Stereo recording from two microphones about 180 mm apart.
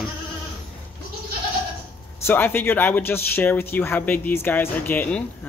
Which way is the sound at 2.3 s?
10° left (ahead or behind).